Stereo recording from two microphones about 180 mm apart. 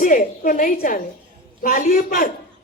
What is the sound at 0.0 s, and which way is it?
A woman's voice, 45° left (ahead or behind).